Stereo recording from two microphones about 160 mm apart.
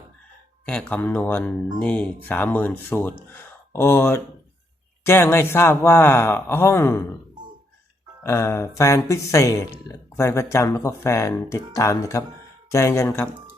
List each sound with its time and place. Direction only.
0.6 s speech: 5° left (ahead or behind)
8.2 s speech: 15° left (ahead or behind)